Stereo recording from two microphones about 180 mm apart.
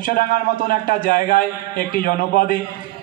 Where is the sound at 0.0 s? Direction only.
55° left (ahead or behind).